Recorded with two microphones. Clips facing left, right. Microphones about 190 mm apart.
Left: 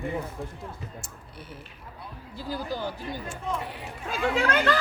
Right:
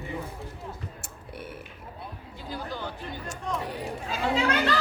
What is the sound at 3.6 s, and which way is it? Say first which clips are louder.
Speech: right 4 dB; 40° right (ahead or behind).